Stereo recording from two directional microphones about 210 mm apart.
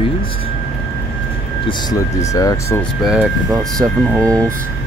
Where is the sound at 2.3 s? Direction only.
15° left (ahead or behind).